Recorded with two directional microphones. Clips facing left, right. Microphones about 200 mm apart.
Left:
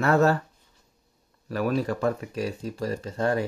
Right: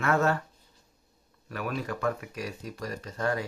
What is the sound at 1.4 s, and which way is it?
Speech, 35° left (ahead or behind).